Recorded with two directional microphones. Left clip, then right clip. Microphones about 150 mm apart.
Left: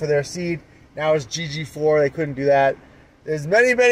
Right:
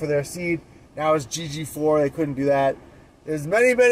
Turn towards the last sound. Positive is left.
turn(degrees=20)  # may be behind; listen again after turning